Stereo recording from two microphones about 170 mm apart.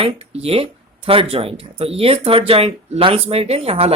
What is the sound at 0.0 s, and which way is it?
Speech, 35° right (ahead or behind).